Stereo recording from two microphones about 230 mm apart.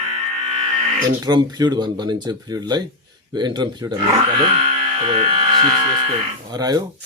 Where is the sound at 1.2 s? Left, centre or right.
Centre.